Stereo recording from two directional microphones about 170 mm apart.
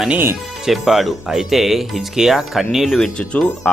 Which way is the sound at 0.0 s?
10° right (ahead or behind).